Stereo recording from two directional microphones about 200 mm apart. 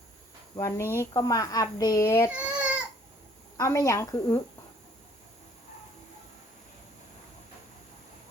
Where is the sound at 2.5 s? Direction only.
5° right (ahead or behind).